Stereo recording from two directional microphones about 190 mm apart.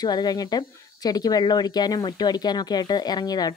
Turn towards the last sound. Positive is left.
turn(degrees=20)  # may be behind; listen again after turning